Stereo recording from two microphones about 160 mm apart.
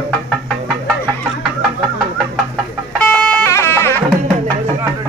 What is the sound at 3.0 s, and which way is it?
Music, 5° left (ahead or behind).